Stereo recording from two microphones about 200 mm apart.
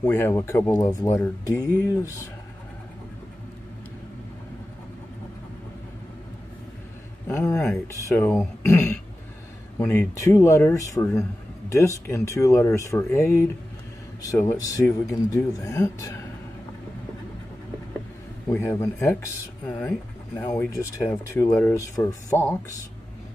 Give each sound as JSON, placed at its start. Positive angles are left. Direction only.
{"t": 0.0, "sound": "speech", "side_deg": 10}
{"t": 7.2, "sound": "speech", "side_deg": 10}
{"t": 18.5, "sound": "speech", "side_deg": 15}